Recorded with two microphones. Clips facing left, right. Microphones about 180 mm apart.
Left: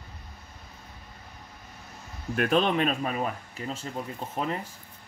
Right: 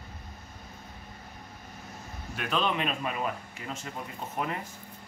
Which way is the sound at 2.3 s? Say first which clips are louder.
Left 6 dB; 45° left (ahead or behind).